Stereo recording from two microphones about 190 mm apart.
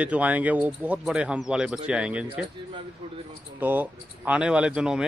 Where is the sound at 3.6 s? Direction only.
10° right (ahead or behind).